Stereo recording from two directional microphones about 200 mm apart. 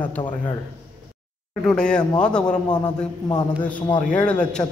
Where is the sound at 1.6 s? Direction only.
5° left (ahead or behind).